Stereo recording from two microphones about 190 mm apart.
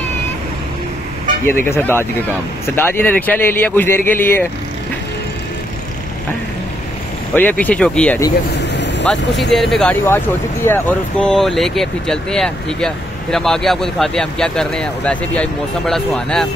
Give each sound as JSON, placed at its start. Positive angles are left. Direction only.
{"t": 1.5, "sound": "speech", "side_deg": 10}
{"t": 7.3, "sound": "speech", "side_deg": 10}
{"t": 8.7, "sound": "vehicle", "side_deg": 65}
{"t": 9.5, "sound": "speech", "side_deg": 0}